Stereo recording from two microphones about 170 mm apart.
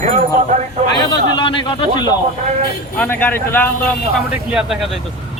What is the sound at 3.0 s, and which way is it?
Speech, 10° left (ahead or behind).